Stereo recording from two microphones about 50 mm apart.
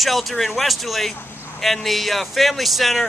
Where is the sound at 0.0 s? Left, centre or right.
Centre.